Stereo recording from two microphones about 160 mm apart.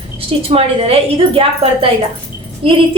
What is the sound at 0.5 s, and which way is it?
A woman's voice, 35° right (ahead or behind).